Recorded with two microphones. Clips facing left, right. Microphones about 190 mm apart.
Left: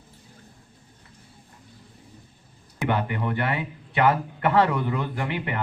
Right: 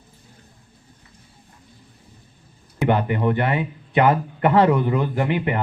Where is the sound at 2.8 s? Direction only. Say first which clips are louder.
Right 6 dB; 20° right (ahead or behind).